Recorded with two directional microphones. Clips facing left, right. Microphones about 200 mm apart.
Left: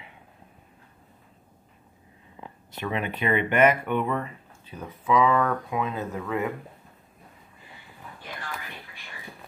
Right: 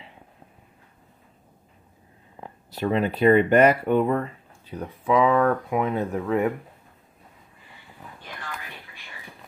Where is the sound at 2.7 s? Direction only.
35° right (ahead or behind).